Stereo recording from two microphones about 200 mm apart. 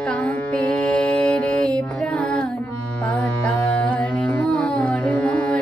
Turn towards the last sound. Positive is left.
turn(degrees=5)  # may be behind; listen again after turning